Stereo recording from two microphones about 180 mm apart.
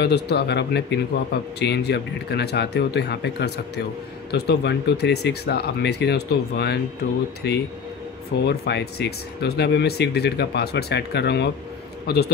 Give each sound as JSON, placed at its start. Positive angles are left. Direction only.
{"t": 0.0, "sound": "a man's voice", "side_deg": 70}